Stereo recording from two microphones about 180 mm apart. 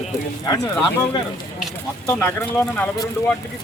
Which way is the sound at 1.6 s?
5° left (ahead or behind).